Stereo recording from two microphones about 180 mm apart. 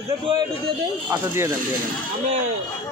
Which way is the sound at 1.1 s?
15° right (ahead or behind).